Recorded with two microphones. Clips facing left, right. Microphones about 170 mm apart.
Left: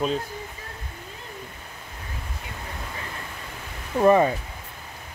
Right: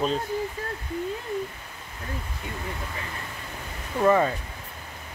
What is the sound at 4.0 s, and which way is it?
Speech, 15° left (ahead or behind).